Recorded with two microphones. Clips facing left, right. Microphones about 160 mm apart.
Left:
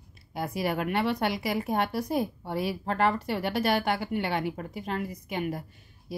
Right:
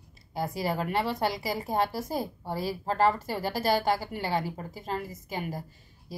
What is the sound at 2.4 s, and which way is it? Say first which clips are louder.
Speech: left 1 dB; 30° right (ahead or behind).